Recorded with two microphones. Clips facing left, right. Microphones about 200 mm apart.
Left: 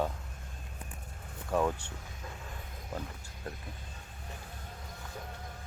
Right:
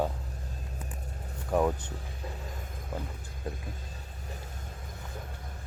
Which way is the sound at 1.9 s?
35° right (ahead or behind).